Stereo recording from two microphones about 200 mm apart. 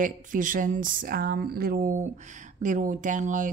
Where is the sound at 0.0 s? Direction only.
40° right (ahead or behind).